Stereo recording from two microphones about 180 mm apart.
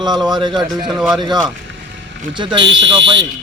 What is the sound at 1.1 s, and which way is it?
A man's voice, 25° right (ahead or behind).